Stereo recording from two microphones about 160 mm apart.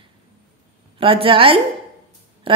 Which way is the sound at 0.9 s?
35° right (ahead or behind).